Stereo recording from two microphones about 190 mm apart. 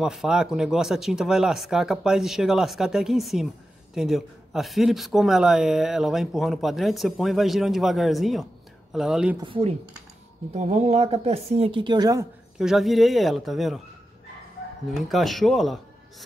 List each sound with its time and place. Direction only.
0.0 s a man's voice: 5° right (ahead or behind)
9.4 s speech: 30° right (ahead or behind)
12.5 s a man's voice: centre (ahead or behind)
14.9 s a man's voice: centre (ahead or behind)